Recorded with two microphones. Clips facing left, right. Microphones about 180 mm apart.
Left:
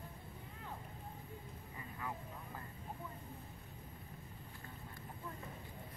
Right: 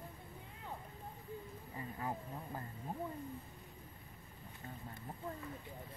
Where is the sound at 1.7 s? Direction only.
35° right (ahead or behind).